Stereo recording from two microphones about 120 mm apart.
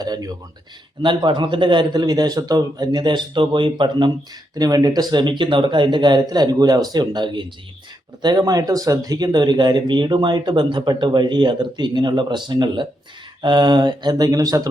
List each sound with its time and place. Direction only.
0.0 s speech: 35° right (ahead or behind)